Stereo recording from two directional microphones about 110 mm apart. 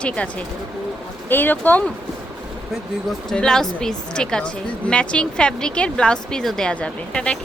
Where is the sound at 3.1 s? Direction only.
5° left (ahead or behind).